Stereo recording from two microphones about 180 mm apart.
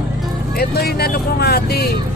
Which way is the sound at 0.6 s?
60° left (ahead or behind).